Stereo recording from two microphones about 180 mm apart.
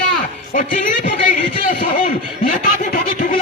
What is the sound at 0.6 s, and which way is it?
Speech, 55° left (ahead or behind).